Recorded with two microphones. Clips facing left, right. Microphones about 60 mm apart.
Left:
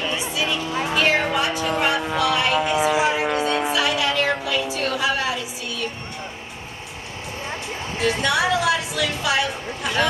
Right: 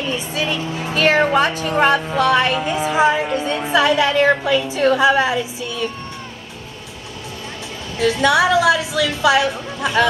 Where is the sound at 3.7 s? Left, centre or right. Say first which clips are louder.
Right 6 dB; right.